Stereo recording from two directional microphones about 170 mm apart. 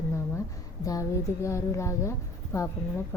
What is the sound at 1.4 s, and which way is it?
Speech, 15° left (ahead or behind).